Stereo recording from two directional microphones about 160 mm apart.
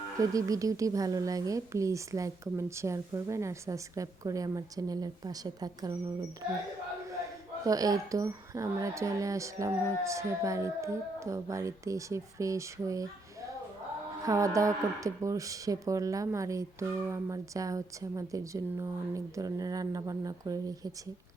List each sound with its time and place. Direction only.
0.2 s speech: 20° right (ahead or behind)
7.6 s speech: 20° right (ahead or behind)
14.3 s speech: 20° right (ahead or behind)